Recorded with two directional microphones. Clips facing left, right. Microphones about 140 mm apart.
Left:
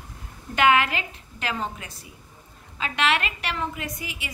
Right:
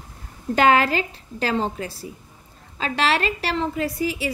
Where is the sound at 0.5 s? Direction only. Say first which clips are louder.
Right 3 dB; 35° right (ahead or behind).